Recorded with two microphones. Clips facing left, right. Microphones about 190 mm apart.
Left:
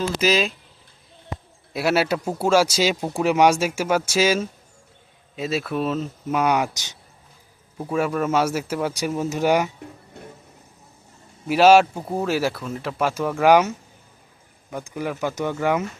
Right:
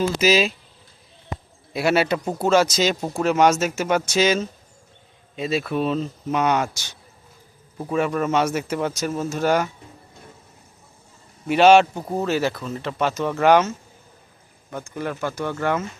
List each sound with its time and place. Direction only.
0.2 s speech: 5° right (ahead or behind)
1.7 s speech: 5° left (ahead or behind)
11.4 s speech: 5° left (ahead or behind)